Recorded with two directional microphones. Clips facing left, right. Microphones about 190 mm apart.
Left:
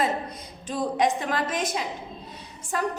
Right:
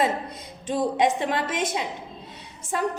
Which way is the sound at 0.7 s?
25° right (ahead or behind).